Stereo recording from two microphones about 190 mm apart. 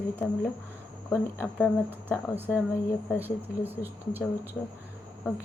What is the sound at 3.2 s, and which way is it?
Speech, 10° right (ahead or behind).